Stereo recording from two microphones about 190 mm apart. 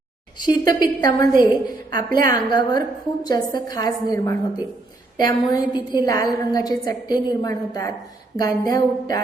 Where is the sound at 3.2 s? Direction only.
20° left (ahead or behind).